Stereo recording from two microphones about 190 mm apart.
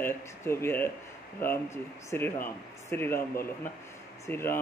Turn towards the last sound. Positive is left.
turn(degrees=10)  # may be behind; listen again after turning